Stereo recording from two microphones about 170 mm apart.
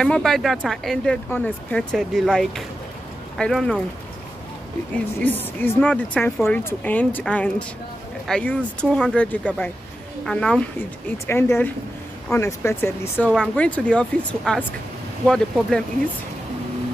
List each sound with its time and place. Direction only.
0.0 s speech: 5° left (ahead or behind)
4.9 s speech: 10° left (ahead or behind)